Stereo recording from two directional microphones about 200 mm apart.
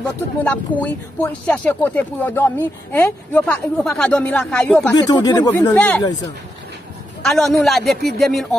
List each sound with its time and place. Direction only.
0.4 s speech: 5° left (ahead or behind)
4.9 s speech: 20° left (ahead or behind)
7.2 s speech: centre (ahead or behind)